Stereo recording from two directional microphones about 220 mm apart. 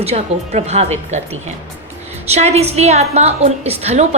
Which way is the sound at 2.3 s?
30° right (ahead or behind).